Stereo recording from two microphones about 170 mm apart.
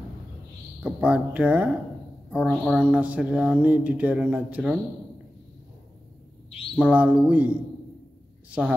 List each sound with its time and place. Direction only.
0.8 s speech: 10° right (ahead or behind)
6.8 s speech: 10° right (ahead or behind)